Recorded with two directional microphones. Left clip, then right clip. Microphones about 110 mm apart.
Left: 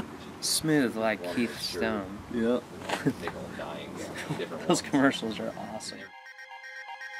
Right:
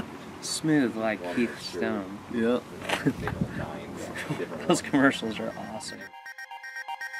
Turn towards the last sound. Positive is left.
turn(degrees=5)  # may be behind; listen again after turning